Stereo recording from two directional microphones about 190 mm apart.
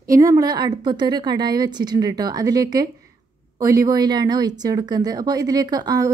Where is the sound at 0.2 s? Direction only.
20° right (ahead or behind).